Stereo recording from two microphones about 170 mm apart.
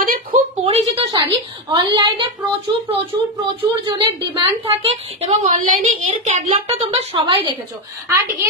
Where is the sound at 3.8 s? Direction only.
30° right (ahead or behind).